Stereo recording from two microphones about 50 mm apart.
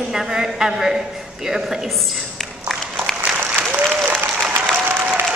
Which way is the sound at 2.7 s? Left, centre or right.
Centre.